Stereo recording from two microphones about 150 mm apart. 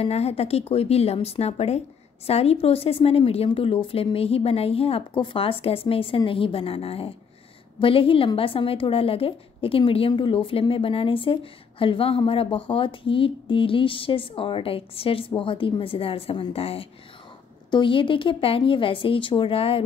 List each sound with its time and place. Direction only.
0.0 s speech: 45° left (ahead or behind)